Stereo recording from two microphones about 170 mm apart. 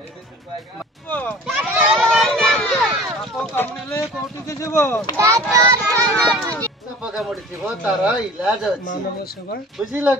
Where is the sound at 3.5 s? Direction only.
15° left (ahead or behind).